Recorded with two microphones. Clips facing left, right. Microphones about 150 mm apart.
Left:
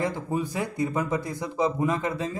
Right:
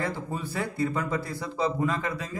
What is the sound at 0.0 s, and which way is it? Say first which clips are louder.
A man's voice: left 4 dB; 15° left (ahead or behind).